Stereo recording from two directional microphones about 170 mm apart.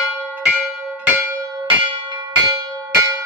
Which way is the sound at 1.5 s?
30° right (ahead or behind).